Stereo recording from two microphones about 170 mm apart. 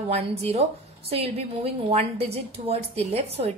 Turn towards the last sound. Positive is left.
turn(degrees=-35)  # may be behind; listen again after turning